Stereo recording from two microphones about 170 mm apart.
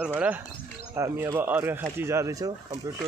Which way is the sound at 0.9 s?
15° right (ahead or behind).